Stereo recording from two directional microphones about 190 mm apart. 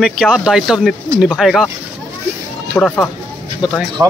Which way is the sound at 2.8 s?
5° left (ahead or behind).